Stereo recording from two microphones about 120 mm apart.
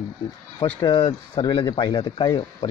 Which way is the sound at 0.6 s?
45° left (ahead or behind).